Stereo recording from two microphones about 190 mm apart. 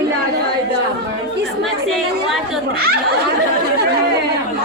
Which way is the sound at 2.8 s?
55° right (ahead or behind).